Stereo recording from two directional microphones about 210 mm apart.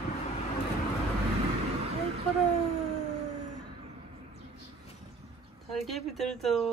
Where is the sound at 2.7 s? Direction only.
35° left (ahead or behind).